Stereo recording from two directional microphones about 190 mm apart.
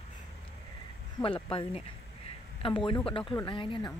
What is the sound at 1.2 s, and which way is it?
Speech, 25° left (ahead or behind).